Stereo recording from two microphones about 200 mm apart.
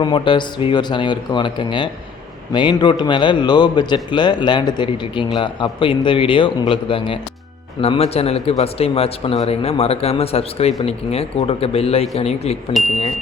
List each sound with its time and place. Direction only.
0.0 s a man's voice: 25° left (ahead or behind)